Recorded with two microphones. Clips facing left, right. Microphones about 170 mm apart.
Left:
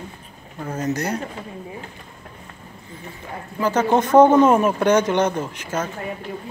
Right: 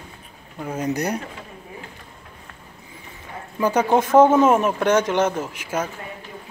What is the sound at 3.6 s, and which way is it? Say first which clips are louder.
Speech: even; 10° right (ahead or behind).